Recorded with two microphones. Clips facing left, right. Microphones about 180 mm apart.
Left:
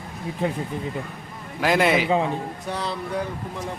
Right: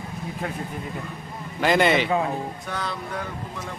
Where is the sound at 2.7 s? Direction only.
30° left (ahead or behind).